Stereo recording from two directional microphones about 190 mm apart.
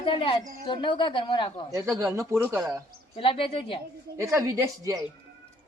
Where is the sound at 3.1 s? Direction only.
30° left (ahead or behind).